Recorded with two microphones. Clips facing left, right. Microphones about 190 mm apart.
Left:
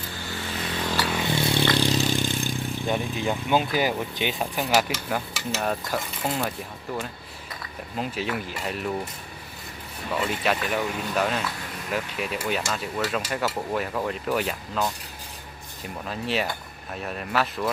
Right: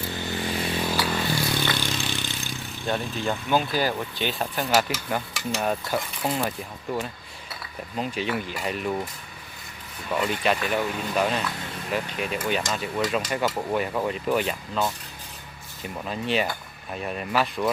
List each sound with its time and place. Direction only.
0.2 s vehicle: 20° right (ahead or behind)
0.8 s a sound: 10° right (ahead or behind)
1.2 s vehicle: 20° left (ahead or behind)
1.7 s vehicle: 35° left (ahead or behind)
2.8 s speech: 15° left (ahead or behind)
4.5 s speech: centre (ahead or behind)
7.9 s speech: centre (ahead or behind)
10.2 s speech: centre (ahead or behind)
16.0 s speech: centre (ahead or behind)